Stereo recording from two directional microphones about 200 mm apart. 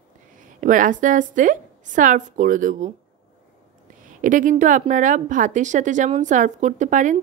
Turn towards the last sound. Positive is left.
turn(degrees=-40)  # may be behind; listen again after turning